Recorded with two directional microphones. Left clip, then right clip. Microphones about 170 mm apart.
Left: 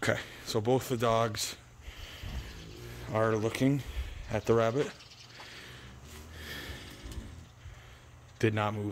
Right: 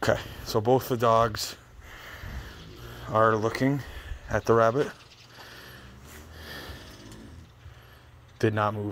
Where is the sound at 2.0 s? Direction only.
25° left (ahead or behind).